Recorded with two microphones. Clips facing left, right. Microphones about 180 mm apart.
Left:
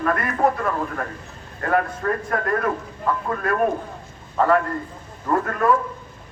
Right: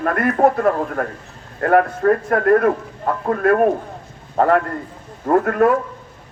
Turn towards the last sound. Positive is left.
turn(degrees=-60)  # may be behind; listen again after turning